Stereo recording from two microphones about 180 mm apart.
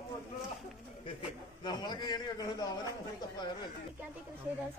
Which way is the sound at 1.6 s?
25° left (ahead or behind).